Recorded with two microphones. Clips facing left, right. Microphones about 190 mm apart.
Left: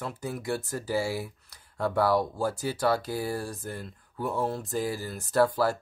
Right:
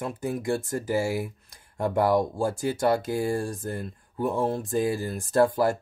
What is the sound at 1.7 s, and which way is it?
Speech, 15° right (ahead or behind).